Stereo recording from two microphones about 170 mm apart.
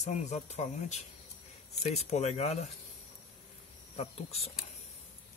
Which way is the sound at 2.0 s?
40° left (ahead or behind).